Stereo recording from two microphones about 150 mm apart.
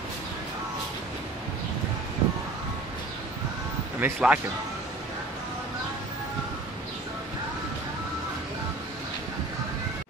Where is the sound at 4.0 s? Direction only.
10° right (ahead or behind).